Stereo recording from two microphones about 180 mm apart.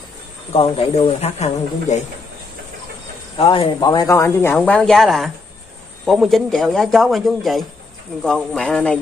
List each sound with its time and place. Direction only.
0.5 s speech: 30° left (ahead or behind)
3.3 s speech: 30° left (ahead or behind); by 8.9 s 5° left (ahead or behind)